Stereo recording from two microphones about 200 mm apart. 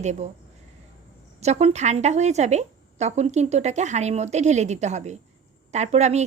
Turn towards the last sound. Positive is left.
turn(degrees=-35)  # may be behind; listen again after turning